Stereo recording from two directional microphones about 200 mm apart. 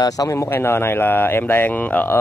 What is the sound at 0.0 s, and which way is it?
Speech, 20° left (ahead or behind).